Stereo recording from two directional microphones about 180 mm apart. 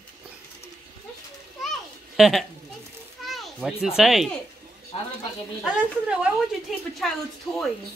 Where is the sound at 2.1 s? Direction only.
Centre (ahead or behind).